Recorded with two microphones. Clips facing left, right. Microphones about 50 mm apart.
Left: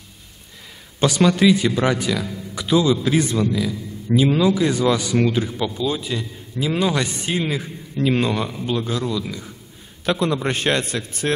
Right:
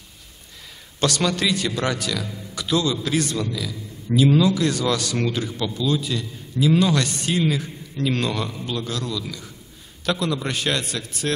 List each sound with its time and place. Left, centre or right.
0.9 s a man's voice: centre